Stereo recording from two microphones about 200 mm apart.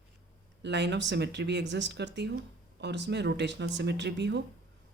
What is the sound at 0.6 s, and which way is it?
Speech, 60° right (ahead or behind).